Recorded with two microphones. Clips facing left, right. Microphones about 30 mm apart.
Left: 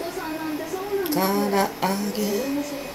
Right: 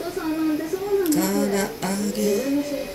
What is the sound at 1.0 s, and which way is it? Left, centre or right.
Speech, centre.